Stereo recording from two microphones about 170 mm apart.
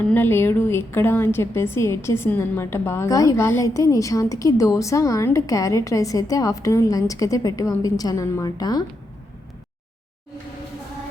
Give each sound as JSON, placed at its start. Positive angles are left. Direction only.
{"t": 0.0, "sound": "a woman's voice", "side_deg": 10}